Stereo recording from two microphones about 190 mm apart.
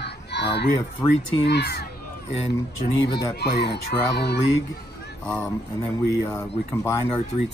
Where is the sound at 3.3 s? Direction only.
60° left (ahead or behind).